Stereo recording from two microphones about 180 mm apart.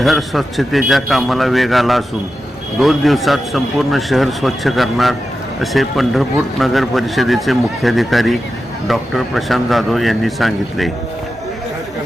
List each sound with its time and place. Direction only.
0.0 s speech: centre (ahead or behind)